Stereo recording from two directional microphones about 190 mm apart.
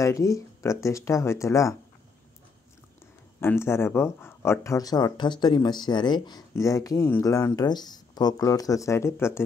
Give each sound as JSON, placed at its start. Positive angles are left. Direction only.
{"t": 0.0, "sound": "speech", "side_deg": 15}
{"t": 3.3, "sound": "speech", "side_deg": 10}